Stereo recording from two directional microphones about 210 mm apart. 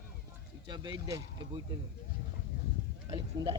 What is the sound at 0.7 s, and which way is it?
Speech, 20° right (ahead or behind).